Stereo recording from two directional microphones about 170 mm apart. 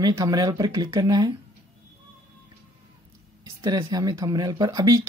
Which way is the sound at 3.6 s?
25° right (ahead or behind).